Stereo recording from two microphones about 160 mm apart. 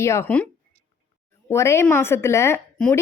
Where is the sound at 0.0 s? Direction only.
15° left (ahead or behind).